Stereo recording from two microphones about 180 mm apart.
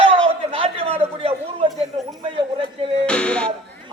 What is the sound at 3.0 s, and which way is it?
Music, 5° left (ahead or behind).